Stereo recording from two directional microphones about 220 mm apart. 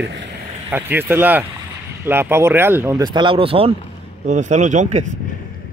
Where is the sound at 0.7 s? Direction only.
10° right (ahead or behind).